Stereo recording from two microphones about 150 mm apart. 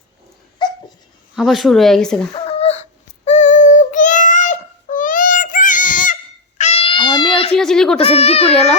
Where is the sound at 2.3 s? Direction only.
40° left (ahead or behind).